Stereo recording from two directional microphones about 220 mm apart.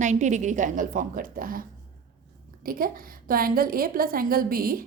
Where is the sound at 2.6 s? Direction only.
40° right (ahead or behind).